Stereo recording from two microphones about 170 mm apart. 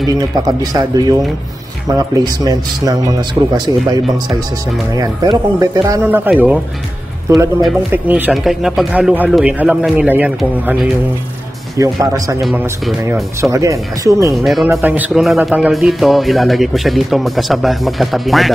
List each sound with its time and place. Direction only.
0.0 s speech: 20° right (ahead or behind)
4.9 s speech: 20° right (ahead or behind)
13.4 s speech: 20° right (ahead or behind)
14.3 s speech: centre (ahead or behind)
14.7 s speech: 10° right (ahead or behind)